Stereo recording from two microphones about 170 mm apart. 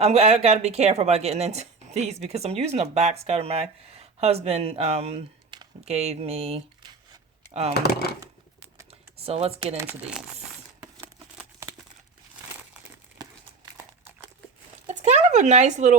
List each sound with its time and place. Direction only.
0.0 s speech: 40° right (ahead or behind)
7.7 s speech: 65° left (ahead or behind)
8.9 s computer keyboard: 35° right (ahead or behind)
9.7 s speech: 10° right (ahead or behind)
11.6 s crumpling: 15° right (ahead or behind)
14.8 s speech: 45° right (ahead or behind)